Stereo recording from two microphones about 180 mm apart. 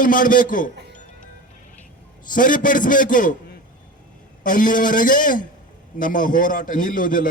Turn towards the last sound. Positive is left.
turn(degrees=50)  # may be behind; listen again after turning